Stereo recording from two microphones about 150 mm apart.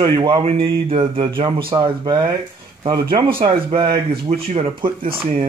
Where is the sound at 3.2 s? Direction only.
35° right (ahead or behind).